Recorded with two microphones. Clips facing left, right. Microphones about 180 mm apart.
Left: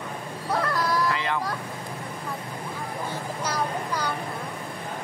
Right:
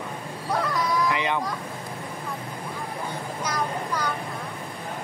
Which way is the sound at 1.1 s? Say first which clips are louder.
Right 2 dB; 15° right (ahead or behind).